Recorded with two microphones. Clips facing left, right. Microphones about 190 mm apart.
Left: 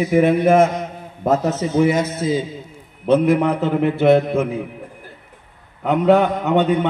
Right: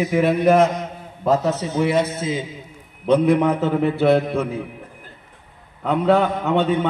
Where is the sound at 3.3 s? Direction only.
Centre (ahead or behind).